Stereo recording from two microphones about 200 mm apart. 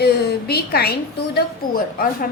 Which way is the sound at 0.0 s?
50° left (ahead or behind).